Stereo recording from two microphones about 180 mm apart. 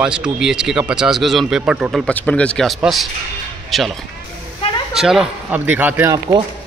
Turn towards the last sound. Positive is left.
turn(degrees=-10)  # may be behind; listen again after turning